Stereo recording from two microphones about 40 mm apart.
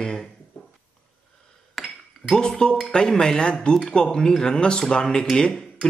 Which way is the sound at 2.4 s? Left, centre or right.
Left.